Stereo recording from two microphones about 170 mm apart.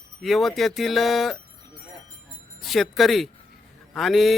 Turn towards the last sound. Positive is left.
turn(degrees=0)  # may be behind; listen again after turning